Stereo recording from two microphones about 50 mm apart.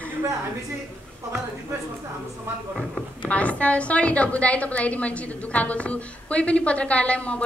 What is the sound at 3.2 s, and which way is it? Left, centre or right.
A woman's voice, left.